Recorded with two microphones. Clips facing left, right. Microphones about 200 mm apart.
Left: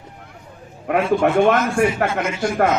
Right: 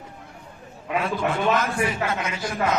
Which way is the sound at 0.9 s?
60° left (ahead or behind).